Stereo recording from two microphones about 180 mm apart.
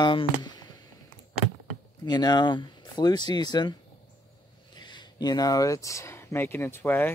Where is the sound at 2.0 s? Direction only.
25° left (ahead or behind).